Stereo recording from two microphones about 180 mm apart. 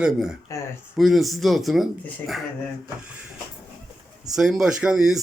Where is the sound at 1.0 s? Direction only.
Centre (ahead or behind).